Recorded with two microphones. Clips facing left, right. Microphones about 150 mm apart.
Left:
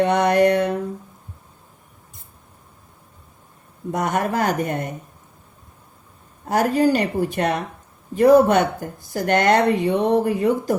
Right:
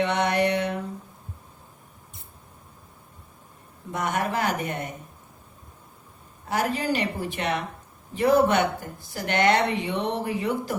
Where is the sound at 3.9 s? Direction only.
45° left (ahead or behind).